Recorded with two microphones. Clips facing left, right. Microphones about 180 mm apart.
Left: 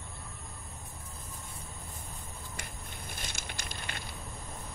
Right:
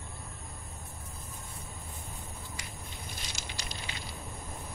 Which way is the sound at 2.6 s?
55° left (ahead or behind).